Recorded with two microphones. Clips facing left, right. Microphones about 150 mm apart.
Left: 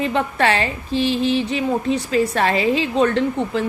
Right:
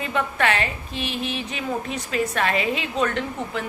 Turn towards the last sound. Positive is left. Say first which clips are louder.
# left 8 dB
turn(degrees=30)  # may be behind; listen again after turning